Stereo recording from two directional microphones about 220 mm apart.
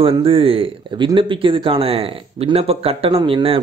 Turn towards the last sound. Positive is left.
turn(degrees=-25)  # may be behind; listen again after turning